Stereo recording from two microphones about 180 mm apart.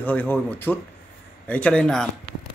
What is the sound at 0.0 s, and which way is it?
Speech, 10° left (ahead or behind).